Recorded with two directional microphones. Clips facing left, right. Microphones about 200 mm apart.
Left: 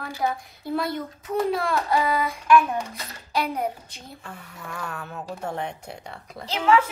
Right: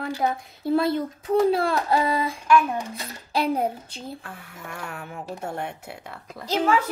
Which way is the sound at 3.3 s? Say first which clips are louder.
Right 3 dB; 30° right (ahead or behind).